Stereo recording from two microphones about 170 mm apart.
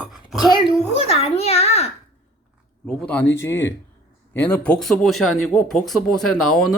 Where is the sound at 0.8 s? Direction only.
35° left (ahead or behind).